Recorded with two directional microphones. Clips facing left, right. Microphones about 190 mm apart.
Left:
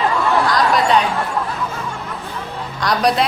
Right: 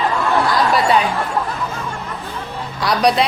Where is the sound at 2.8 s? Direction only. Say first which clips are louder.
Right 1 dB; centre (ahead or behind).